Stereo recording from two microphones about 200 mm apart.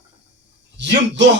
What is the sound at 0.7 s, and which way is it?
Speech, 60° right (ahead or behind).